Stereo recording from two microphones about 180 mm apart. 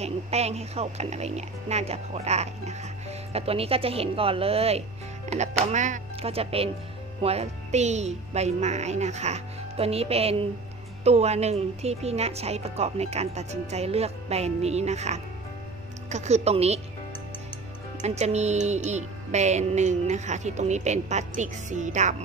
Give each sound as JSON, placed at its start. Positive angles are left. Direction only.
{"t": 0.0, "sound": "speech", "side_deg": -35}
{"t": 18.0, "sound": "speech", "side_deg": -40}